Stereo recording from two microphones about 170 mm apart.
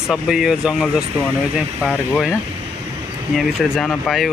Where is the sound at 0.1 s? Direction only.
Centre (ahead or behind).